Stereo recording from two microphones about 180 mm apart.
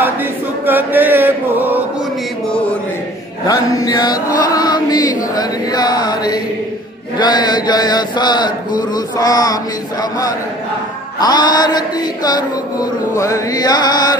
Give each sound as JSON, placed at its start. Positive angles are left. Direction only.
{"t": 0.0, "sound": "chant", "side_deg": -10}
{"t": 3.4, "sound": "chant", "side_deg": 20}
{"t": 11.1, "sound": "chant", "side_deg": 20}